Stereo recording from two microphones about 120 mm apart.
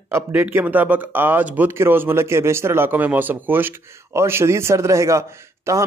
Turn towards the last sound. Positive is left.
turn(degrees=-25)  # may be behind; listen again after turning